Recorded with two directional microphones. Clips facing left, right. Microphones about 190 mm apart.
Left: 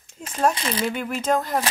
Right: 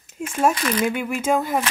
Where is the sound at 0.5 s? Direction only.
25° left (ahead or behind).